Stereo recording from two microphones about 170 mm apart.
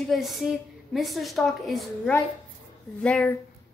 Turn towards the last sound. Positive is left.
turn(degrees=5)  # may be behind; listen again after turning